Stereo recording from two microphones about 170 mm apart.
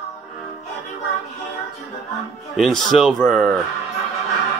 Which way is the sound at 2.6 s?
Centre (ahead or behind).